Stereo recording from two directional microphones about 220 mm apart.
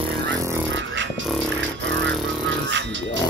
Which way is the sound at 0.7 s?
55° right (ahead or behind).